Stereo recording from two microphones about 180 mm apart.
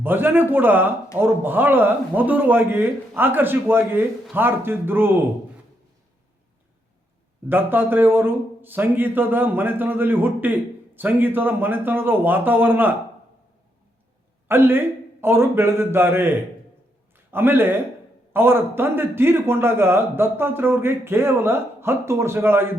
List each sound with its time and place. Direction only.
0.0 s a man's voice: 10° right (ahead or behind)
7.4 s a man's voice: 10° right (ahead or behind)
14.4 s a man's voice: 10° right (ahead or behind)